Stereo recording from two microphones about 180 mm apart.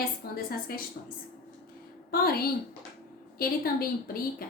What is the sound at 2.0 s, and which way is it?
A woman's voice, 55° left (ahead or behind).